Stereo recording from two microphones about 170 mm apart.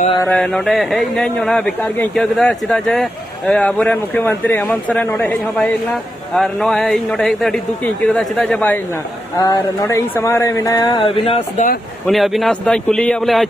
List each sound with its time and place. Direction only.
0.2 s speech: 5° left (ahead or behind)
9.4 s speech: 20° left (ahead or behind)
12.1 s speech: centre (ahead or behind)